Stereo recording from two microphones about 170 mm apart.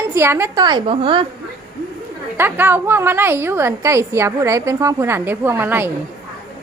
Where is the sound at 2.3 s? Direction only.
10° right (ahead or behind).